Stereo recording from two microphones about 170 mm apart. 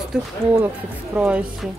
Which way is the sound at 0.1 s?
10° right (ahead or behind).